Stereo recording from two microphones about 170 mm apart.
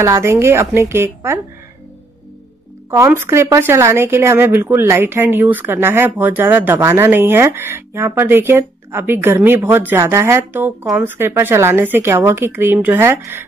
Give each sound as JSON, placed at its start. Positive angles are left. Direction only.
{"t": 0.0, "sound": "speech", "side_deg": -15}
{"t": 2.9, "sound": "speech", "side_deg": -15}